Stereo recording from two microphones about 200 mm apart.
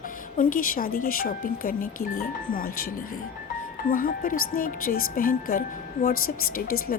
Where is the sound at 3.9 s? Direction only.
45° left (ahead or behind).